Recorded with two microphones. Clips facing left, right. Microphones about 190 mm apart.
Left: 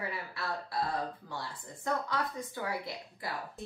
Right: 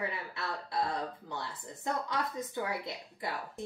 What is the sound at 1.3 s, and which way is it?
A woman's voice, 20° right (ahead or behind).